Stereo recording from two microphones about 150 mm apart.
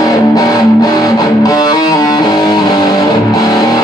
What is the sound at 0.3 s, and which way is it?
Music, 25° left (ahead or behind).